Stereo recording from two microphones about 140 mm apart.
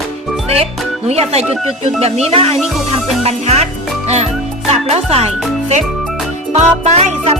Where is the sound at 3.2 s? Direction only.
50° right (ahead or behind).